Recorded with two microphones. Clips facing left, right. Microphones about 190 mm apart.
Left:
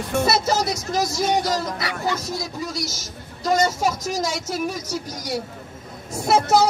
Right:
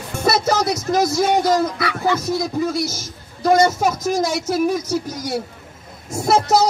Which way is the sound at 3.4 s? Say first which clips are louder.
Right 5 dB; 55° right (ahead or behind).